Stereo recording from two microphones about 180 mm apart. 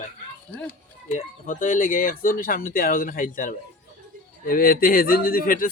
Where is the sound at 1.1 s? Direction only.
45° left (ahead or behind).